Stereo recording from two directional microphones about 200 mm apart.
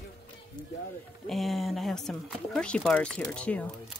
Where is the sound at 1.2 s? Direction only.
Centre (ahead or behind).